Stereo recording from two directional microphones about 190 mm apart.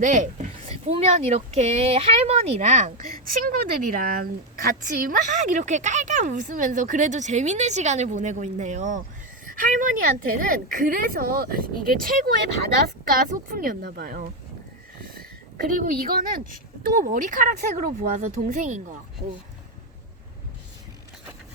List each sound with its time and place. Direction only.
0.0 s a woman's voice: 40° right (ahead or behind)
15.0 s a sound: 50° right (ahead or behind)
15.8 s a woman's voice: 50° right (ahead or behind)